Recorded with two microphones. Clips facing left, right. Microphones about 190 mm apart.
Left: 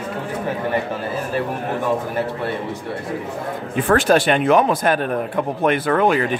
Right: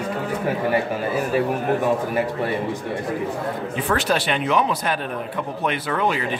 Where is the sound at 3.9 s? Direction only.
50° left (ahead or behind).